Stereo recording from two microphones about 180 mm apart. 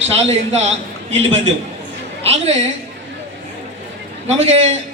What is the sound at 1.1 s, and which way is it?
Speech, 90° right.